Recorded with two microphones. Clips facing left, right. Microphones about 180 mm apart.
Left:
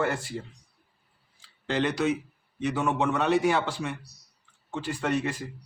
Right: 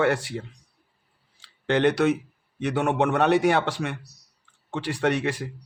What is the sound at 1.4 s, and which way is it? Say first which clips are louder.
A man's voice: right 6 dB; 65° right (ahead or behind).